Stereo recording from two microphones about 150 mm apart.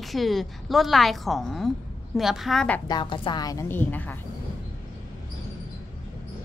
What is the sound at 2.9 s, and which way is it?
A woman's voice, 30° left (ahead or behind).